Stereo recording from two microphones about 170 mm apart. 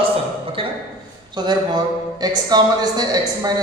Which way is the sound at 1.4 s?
25° right (ahead or behind).